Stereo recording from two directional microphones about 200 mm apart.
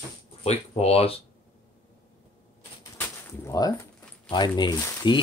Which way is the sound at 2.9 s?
15° left (ahead or behind).